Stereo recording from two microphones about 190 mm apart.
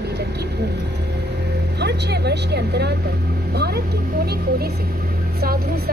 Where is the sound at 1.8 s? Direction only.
60° right (ahead or behind).